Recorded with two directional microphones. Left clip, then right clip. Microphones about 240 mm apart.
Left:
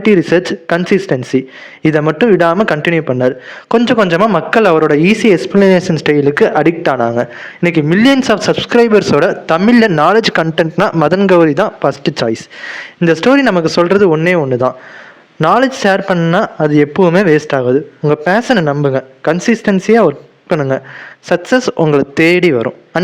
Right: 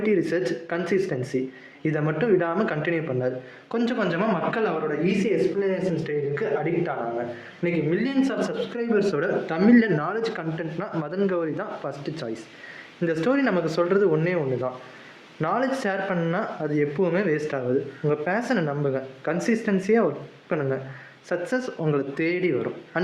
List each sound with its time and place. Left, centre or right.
0.0 s a man's voice: left